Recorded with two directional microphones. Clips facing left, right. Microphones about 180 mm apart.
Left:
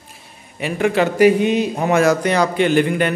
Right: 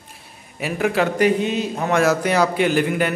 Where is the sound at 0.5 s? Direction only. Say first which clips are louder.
Left 3 dB; centre (ahead or behind); by 1.9 s 15° left (ahead or behind).